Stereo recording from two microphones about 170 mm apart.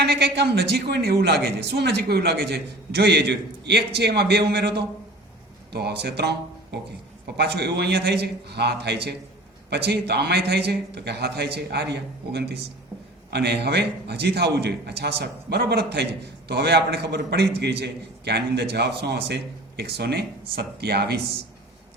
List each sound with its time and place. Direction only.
0.0 s a woman's voice: 75° right (ahead or behind)